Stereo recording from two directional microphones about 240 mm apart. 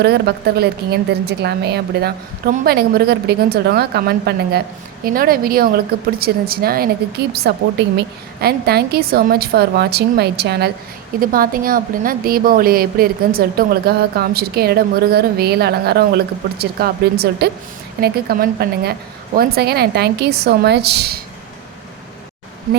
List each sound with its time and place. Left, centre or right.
0.0 s a woman's voice: right